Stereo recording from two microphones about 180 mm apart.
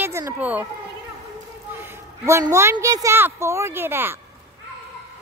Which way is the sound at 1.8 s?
15° right (ahead or behind).